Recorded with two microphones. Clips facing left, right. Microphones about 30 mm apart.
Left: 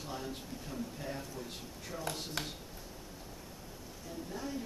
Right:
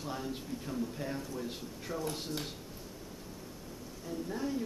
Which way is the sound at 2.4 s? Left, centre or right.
Left.